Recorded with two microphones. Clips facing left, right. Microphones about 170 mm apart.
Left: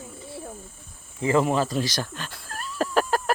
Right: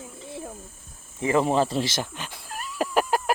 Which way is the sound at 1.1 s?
20° right (ahead or behind).